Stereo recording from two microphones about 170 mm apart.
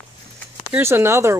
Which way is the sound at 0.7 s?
15° right (ahead or behind).